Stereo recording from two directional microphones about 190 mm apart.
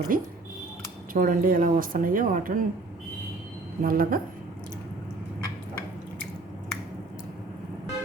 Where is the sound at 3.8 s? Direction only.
50° right (ahead or behind).